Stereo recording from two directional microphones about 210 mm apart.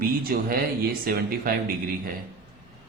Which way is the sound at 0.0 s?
45° right (ahead or behind).